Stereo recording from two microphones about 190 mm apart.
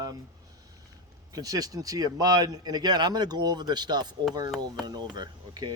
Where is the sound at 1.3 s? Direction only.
20° right (ahead or behind).